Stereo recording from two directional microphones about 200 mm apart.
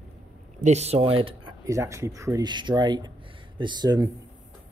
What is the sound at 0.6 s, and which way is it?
Speech, 35° right (ahead or behind).